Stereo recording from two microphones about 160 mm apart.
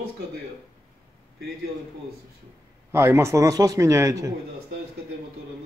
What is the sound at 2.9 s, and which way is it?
A man's voice, 15° right (ahead or behind).